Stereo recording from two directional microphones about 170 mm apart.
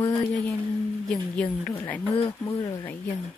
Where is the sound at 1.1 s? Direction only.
5° left (ahead or behind).